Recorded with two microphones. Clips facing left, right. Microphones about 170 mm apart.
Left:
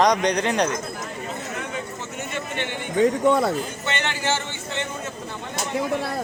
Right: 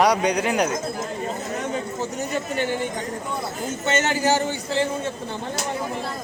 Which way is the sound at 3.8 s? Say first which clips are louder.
Right 8 dB; 40° right (ahead or behind).